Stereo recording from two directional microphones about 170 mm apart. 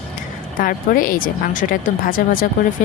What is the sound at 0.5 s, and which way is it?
Speech, 55° left (ahead or behind).